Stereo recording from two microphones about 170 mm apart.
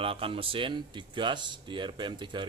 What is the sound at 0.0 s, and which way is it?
Speech, 35° right (ahead or behind).